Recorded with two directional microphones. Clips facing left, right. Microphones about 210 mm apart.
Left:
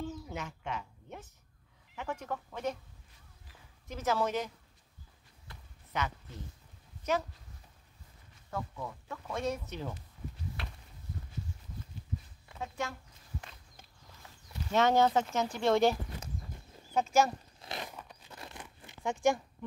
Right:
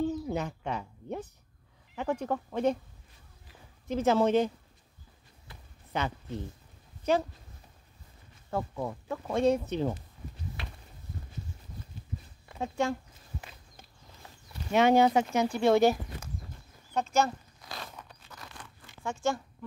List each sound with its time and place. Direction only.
0.0 s a sound: 35° right (ahead or behind)
2.0 s speech: 35° right (ahead or behind)
3.8 s speech: 30° right (ahead or behind)
5.5 s a sound: 5° right (ahead or behind)
5.9 s speech: 30° right (ahead or behind)
7.0 s dog: 30° right (ahead or behind)
8.5 s speech: 30° right (ahead or behind)
10.6 s a sound: centre (ahead or behind)
12.5 s speech: 30° right (ahead or behind)
14.7 s speech: 15° right (ahead or behind)
16.9 s speech: 10° left (ahead or behind)
17.6 s a sound: 20° left (ahead or behind)
17.9 s crunch: 15° left (ahead or behind)